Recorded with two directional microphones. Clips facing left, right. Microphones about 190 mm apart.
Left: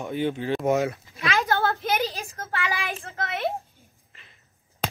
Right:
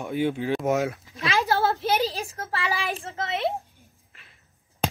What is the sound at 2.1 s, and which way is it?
A woman's voice, 30° right (ahead or behind).